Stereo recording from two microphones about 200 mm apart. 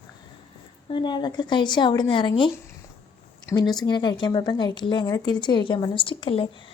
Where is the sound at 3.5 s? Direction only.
20° left (ahead or behind).